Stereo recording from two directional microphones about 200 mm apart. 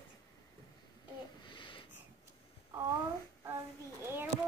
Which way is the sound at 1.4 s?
25° left (ahead or behind).